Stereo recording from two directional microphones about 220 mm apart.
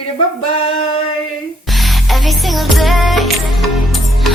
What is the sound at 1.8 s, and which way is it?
Music, centre (ahead or behind).